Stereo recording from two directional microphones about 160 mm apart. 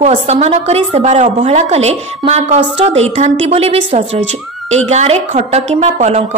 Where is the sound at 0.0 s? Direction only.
45° right (ahead or behind).